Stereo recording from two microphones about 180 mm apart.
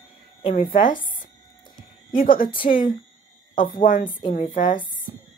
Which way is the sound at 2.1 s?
50° left (ahead or behind).